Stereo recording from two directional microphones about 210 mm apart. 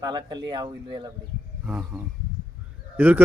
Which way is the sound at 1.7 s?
10° right (ahead or behind).